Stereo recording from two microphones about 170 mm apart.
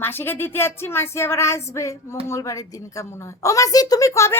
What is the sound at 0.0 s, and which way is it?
A woman's voice, 15° left (ahead or behind).